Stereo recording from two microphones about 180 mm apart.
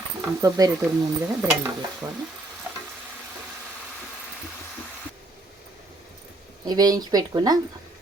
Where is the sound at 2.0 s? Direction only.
10° right (ahead or behind).